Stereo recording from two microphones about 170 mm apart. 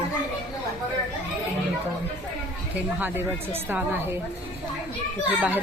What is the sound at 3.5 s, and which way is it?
Speech, 10° right (ahead or behind).